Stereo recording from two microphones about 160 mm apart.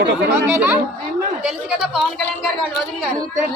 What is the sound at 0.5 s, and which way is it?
Speech, 10° right (ahead or behind).